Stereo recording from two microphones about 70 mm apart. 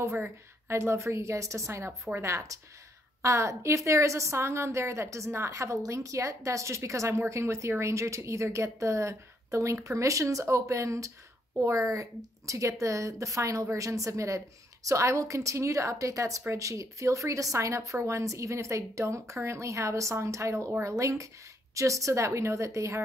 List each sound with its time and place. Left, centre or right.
0.0 s a woman's voice: right